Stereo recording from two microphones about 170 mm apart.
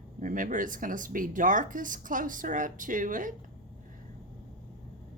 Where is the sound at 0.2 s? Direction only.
55° right (ahead or behind).